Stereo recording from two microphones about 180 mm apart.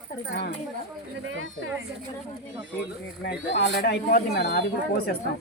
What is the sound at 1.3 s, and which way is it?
Speech, 90° right.